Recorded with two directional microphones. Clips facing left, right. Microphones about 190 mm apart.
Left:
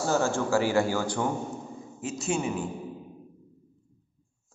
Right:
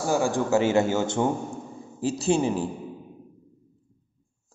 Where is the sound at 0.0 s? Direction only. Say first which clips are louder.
Right 2 dB; 15° right (ahead or behind); by 2.7 s 35° right (ahead or behind).